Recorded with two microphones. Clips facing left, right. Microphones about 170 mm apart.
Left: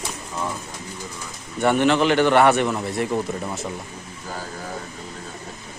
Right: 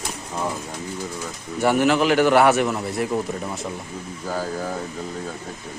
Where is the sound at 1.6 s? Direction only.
5° right (ahead or behind).